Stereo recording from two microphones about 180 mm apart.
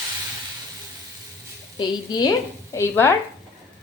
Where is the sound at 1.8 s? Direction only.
20° left (ahead or behind).